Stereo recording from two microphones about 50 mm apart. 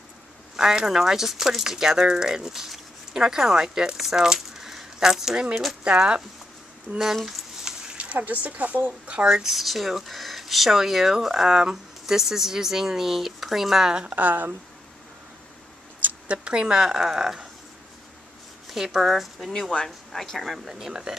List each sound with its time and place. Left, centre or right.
0.6 s speech: centre
5.5 s speech: centre
5.9 s speech: centre
7.2 s a sound: centre
8.0 s speech: right; by 14.0 s centre
14.0 s speech: right
16.3 s speech: centre
18.7 s speech: centre
19.7 s speech: centre